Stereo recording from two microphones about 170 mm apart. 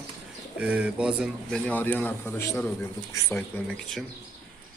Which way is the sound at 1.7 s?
10° left (ahead or behind).